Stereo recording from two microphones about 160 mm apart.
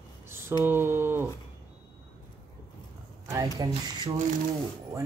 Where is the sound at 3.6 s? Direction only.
25° right (ahead or behind).